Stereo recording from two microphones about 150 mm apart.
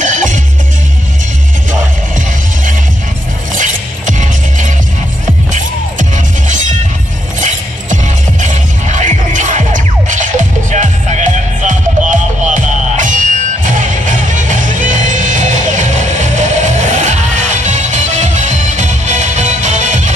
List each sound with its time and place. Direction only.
0.0 s music: 55° right (ahead or behind)
1.7 s music: 60° right (ahead or behind)
7.3 s music: 55° right (ahead or behind)